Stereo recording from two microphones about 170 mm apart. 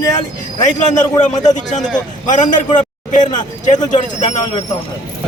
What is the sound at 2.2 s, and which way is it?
Speech, 50° left (ahead or behind).